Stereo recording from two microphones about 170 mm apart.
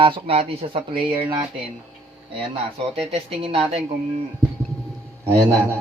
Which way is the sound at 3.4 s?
35° right (ahead or behind).